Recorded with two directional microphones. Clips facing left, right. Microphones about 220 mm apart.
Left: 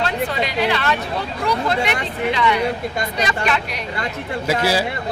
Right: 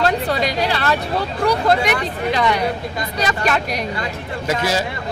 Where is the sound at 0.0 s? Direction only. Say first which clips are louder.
Right 3 dB; 40° right (ahead or behind).